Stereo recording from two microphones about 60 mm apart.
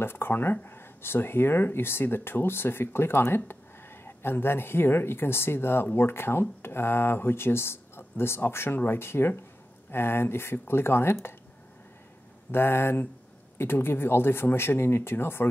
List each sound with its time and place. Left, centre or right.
0.0 s speech: left
12.4 s speech: left